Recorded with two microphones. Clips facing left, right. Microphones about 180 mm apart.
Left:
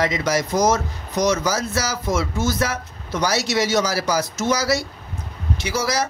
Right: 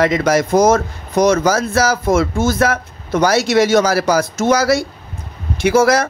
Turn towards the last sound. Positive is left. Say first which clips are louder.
# right 10 dB
turn(degrees=-55)  # may be behind; listen again after turning